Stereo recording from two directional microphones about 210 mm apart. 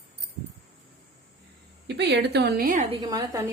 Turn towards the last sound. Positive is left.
turn(degrees=-15)  # may be behind; listen again after turning